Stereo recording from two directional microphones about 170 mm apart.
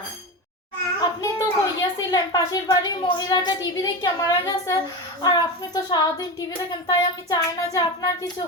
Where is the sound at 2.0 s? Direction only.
20° left (ahead or behind).